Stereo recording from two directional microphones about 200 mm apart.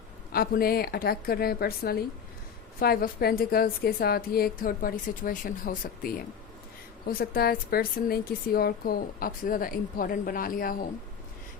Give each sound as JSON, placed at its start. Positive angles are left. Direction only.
{"t": 0.3, "sound": "a woman's voice", "side_deg": 50}